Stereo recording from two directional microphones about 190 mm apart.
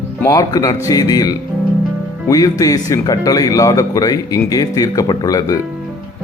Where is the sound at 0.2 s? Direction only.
20° left (ahead or behind).